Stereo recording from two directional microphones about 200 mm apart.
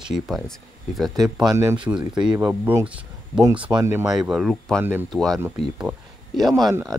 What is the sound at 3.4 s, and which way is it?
Speech, 25° right (ahead or behind).